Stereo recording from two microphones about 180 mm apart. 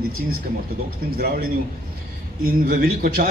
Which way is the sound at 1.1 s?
60° right (ahead or behind).